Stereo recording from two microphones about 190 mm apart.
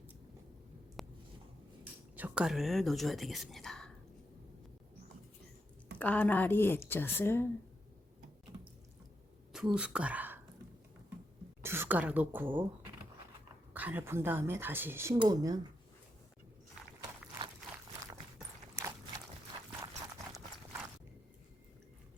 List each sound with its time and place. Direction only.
1.0 s a sound: centre (ahead or behind)
1.8 s speech: 10° right (ahead or behind)
6.0 s a woman's voice: 10° left (ahead or behind)
9.5 s a woman's voice: 5° right (ahead or behind)
11.6 s a woman's voice: 10° right (ahead or behind)
13.7 s a woman's voice: 10° right (ahead or behind)
19.8 s clip-clop: 20° right (ahead or behind)